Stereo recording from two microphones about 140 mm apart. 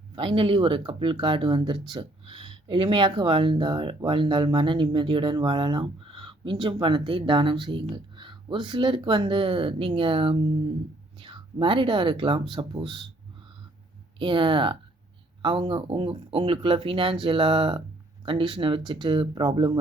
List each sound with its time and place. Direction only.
0.2 s speech: 40° right (ahead or behind)
14.2 s speech: 35° right (ahead or behind)